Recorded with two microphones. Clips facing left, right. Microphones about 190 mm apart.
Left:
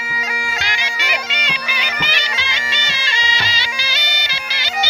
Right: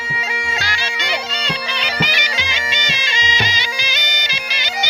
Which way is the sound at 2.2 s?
20° right (ahead or behind).